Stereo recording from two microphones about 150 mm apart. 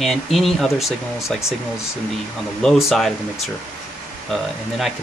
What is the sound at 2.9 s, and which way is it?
Speech, centre (ahead or behind).